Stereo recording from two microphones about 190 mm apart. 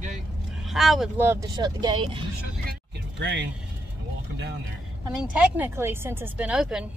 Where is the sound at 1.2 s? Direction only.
15° right (ahead or behind).